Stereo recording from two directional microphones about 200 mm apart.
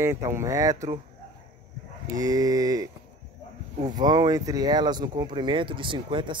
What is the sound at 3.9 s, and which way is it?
Speech, 20° right (ahead or behind).